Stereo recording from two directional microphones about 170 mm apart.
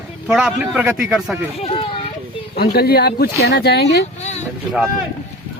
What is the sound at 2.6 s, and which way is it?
Speech, 65° left (ahead or behind).